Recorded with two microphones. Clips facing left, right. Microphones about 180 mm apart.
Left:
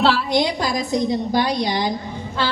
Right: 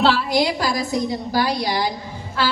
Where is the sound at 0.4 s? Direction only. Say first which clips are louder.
Even; 20° left (ahead or behind).